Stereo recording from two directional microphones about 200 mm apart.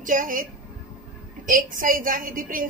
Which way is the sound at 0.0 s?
45° right (ahead or behind).